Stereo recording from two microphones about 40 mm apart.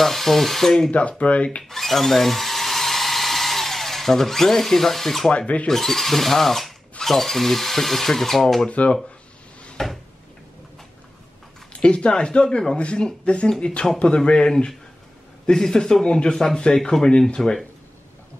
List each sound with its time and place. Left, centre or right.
0.0 s speech: centre
0.9 s speech: left
1.6 s drill: centre
5.7 s speech: centre
8.6 s speech: left
9.8 s a sound: centre
11.8 s speech: left
17.4 s a sound: centre